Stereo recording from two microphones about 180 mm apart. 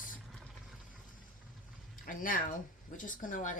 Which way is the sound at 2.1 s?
50° left (ahead or behind).